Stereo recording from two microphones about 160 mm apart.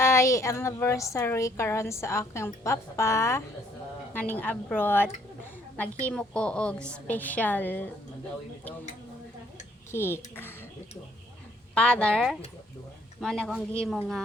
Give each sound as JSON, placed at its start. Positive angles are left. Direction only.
{"t": 0.0, "sound": "a woman's voice", "side_deg": 15}
{"t": 6.1, "sound": "a woman's voice", "side_deg": 5}
{"t": 9.9, "sound": "a woman's voice", "side_deg": 15}
{"t": 11.7, "sound": "speech", "side_deg": 5}